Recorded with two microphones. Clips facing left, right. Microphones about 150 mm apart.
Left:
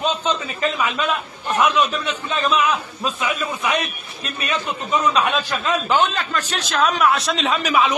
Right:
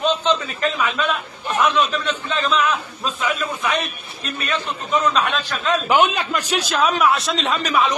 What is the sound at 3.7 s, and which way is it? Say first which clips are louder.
A man's voice: left 1 dB; 10° left (ahead or behind).